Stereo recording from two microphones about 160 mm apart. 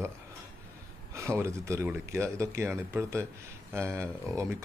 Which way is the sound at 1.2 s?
15° right (ahead or behind).